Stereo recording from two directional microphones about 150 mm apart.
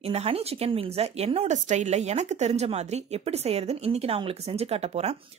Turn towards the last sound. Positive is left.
turn(degrees=-45)  # may be behind; listen again after turning